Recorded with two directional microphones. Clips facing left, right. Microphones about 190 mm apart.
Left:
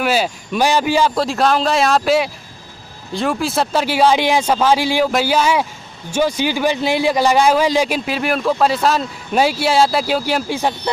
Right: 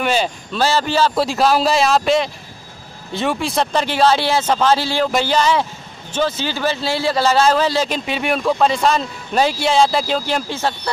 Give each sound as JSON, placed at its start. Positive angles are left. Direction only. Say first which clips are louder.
{"t": 0.0, "sound": "speech", "louder": "left 1 dB", "side_deg": 5}
{"t": 1.1, "sound": "speech", "louder": "even", "side_deg": 0}
{"t": 8.0, "sound": "speech", "louder": "left 1 dB", "side_deg": 0}